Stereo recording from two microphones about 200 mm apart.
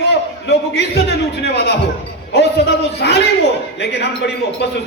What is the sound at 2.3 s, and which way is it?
A man's voice, 55° left (ahead or behind).